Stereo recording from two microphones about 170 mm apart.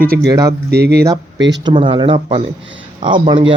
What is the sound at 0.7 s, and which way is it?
Speech, 70° right (ahead or behind).